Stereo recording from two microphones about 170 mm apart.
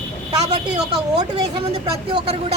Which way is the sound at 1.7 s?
35° right (ahead or behind).